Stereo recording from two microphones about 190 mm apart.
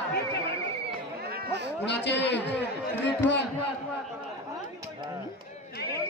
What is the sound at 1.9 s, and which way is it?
Speech, 65° left (ahead or behind).